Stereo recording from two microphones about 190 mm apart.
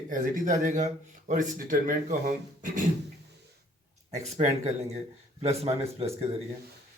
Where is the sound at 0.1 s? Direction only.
45° right (ahead or behind).